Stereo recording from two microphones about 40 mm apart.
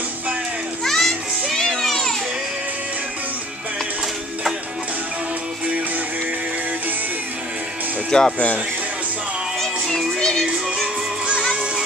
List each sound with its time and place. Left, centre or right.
0.8 s music: centre
1.7 s a sound: centre
8.1 s speech: left
9.6 s music: centre
10.1 s music: centre
10.4 s music: right